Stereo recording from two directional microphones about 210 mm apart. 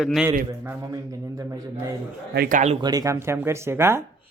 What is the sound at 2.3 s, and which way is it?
Speech, 45° right (ahead or behind).